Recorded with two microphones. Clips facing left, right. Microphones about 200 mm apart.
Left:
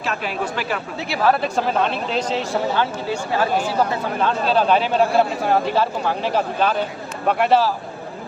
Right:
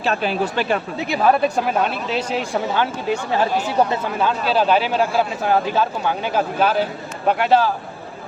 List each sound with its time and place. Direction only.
0.0 s speech: 35° right (ahead or behind)
0.9 s speech: 20° right (ahead or behind)
4.4 s speech: 5° right (ahead or behind)